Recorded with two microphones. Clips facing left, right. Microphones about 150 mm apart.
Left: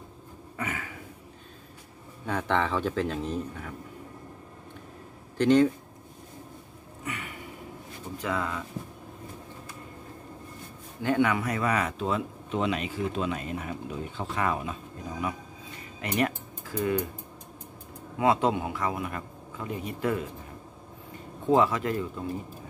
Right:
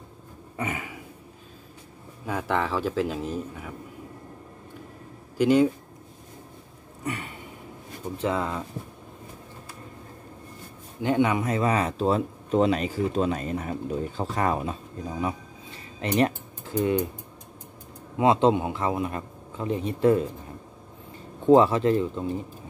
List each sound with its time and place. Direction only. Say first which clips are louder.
0.6 s a sound: right 3 dB; 20° right (ahead or behind)
2.2 s speech: even; 5° right (ahead or behind)
5.4 s speech: right 1 dB; 10° right (ahead or behind)
7.1 s a sound: right 5 dB; 35° right (ahead or behind)
8.2 s a man's voice: right 4 dB; 30° right (ahead or behind)
11.0 s speech: right 2 dB; 20° right (ahead or behind)
16.0 s cutlery: right 5 dB; 30° right (ahead or behind)
18.1 s a man's voice: right 4 dB; 25° right (ahead or behind)
21.5 s a man's voice: right 6 dB; 30° right (ahead or behind)